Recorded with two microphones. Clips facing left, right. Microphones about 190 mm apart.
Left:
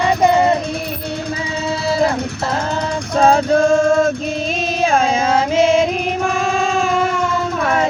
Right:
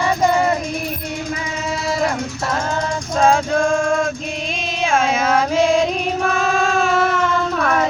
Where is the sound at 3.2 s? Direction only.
35° left (ahead or behind).